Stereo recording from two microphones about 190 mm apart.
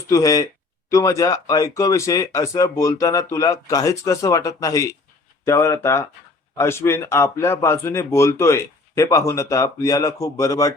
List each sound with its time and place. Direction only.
0.1 s speech: 15° left (ahead or behind)